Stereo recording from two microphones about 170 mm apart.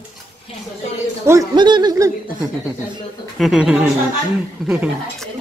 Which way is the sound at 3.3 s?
Centre (ahead or behind).